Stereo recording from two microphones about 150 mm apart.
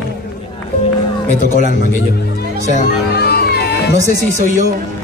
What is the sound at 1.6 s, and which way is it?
Speech, 80° left.